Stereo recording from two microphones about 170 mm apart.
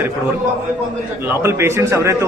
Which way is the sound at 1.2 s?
15° right (ahead or behind).